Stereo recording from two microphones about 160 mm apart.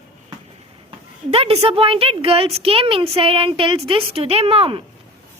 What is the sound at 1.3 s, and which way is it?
A woman's voice, 40° right (ahead or behind).